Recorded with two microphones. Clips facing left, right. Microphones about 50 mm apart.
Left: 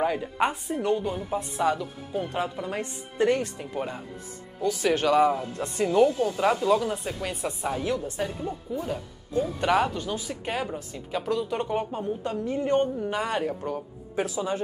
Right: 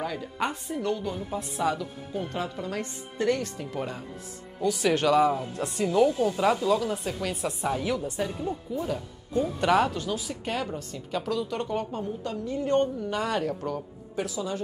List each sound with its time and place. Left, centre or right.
0.0 s a woman's voice: left
2.3 s a woman's voice: left; by 6.4 s centre
6.6 s a woman's voice: centre
12.6 s a woman's voice: centre
14.1 s a woman's voice: left